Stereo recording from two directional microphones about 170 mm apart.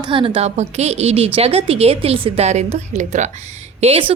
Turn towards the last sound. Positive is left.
turn(degrees=-35)  # may be behind; listen again after turning